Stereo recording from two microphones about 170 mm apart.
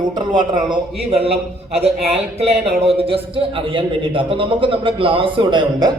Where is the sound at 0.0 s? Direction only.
25° right (ahead or behind).